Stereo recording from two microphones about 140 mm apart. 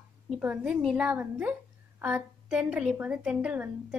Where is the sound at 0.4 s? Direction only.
10° right (ahead or behind).